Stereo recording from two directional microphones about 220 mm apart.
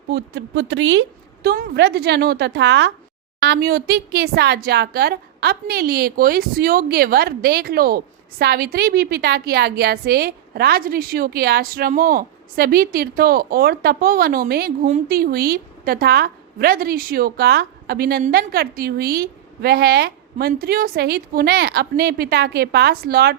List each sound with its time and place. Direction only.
0.1 s a woman's voice: 50° right (ahead or behind)